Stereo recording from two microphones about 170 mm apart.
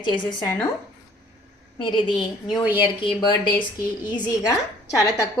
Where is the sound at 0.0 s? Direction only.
25° left (ahead or behind).